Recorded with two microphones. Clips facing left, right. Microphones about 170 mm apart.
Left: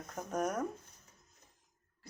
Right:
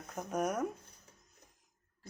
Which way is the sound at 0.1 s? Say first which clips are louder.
Right 1 dB; 10° right (ahead or behind).